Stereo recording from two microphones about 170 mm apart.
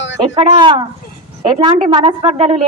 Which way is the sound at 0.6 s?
30° right (ahead or behind).